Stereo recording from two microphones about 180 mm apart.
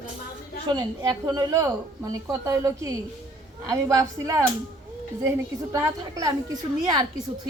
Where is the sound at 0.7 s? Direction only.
25° right (ahead or behind).